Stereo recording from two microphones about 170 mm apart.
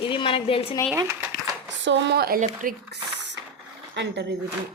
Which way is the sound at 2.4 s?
55° right (ahead or behind).